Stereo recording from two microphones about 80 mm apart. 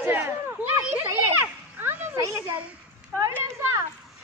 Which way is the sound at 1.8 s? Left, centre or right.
Right.